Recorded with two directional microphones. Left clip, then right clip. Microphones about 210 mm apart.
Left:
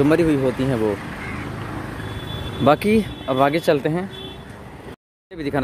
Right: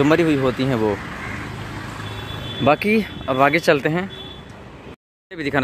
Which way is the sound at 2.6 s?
10° left (ahead or behind).